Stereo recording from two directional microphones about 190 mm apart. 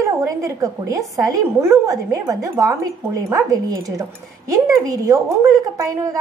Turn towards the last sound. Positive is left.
turn(degrees=-15)  # may be behind; listen again after turning